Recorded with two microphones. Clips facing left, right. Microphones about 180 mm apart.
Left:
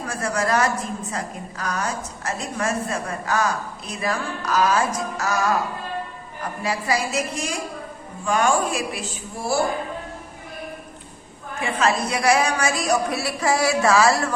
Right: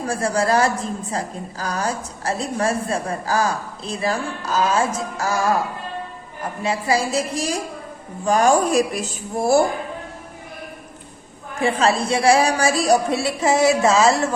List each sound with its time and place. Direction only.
0.0 s a woman's voice: 30° right (ahead or behind)
11.6 s a woman's voice: 30° right (ahead or behind)